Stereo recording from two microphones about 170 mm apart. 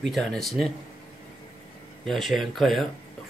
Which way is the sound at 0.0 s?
5° left (ahead or behind).